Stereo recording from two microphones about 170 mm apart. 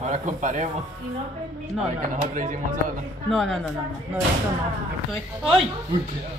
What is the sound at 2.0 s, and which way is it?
Speech, 50° right (ahead or behind).